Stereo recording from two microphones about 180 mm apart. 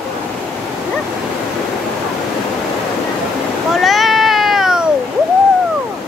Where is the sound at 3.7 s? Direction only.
Centre (ahead or behind).